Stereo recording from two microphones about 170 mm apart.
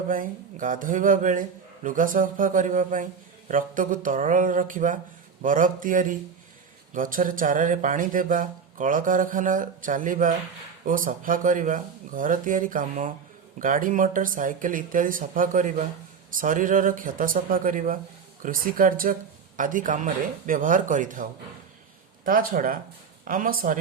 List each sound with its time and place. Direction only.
0.1 s speech: 50° right (ahead or behind)